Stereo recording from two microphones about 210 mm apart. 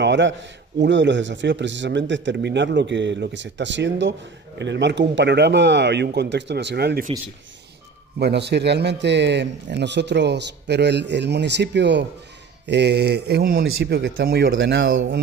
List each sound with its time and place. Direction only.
0.0 s a man's voice: 60° right (ahead or behind)
8.2 s a man's voice: 55° right (ahead or behind)